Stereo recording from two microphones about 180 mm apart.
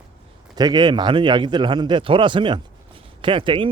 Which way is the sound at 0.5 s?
20° right (ahead or behind).